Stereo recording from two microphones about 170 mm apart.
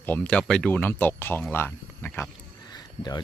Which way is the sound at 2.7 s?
25° left (ahead or behind).